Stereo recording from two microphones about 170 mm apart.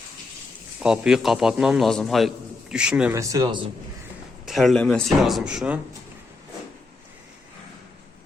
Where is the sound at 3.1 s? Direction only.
20° right (ahead or behind).